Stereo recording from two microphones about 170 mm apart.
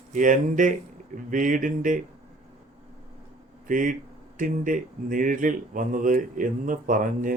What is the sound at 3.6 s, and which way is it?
Speech, 50° right (ahead or behind).